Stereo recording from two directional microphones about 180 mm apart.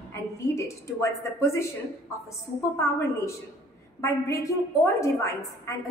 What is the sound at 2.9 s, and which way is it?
A woman's voice, 15° left (ahead or behind).